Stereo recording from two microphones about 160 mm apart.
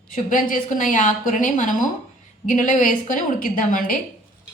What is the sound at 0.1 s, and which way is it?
A woman's voice, 55° left (ahead or behind).